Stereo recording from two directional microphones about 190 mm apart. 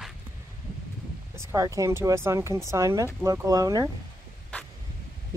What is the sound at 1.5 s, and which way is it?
Speech, 15° right (ahead or behind).